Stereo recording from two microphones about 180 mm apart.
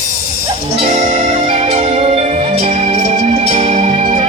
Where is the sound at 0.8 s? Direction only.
35° right (ahead or behind).